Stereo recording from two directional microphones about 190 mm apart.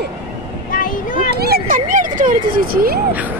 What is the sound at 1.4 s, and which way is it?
Speech, 50° right (ahead or behind).